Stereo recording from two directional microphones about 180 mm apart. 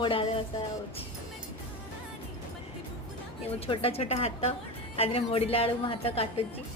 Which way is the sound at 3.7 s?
30° left (ahead or behind).